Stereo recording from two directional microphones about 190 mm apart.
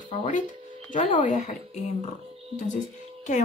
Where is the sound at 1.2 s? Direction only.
40° left (ahead or behind).